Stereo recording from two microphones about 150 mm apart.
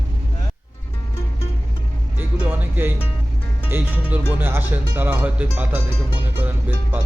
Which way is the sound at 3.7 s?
10° right (ahead or behind).